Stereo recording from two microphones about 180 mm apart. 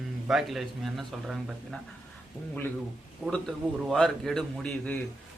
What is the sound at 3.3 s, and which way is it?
Speech, 5° left (ahead or behind).